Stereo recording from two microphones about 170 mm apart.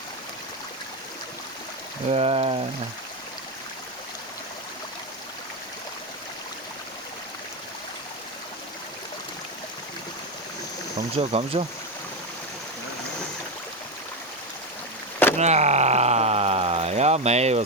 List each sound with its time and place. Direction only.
2.0 s speech: 35° right (ahead or behind)
11.1 s speech: 40° right (ahead or behind)
15.4 s a sound: 40° right (ahead or behind)